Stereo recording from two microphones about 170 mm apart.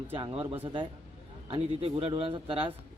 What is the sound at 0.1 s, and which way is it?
Speech, 30° right (ahead or behind).